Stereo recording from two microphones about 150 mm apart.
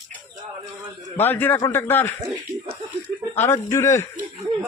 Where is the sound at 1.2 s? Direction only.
15° left (ahead or behind).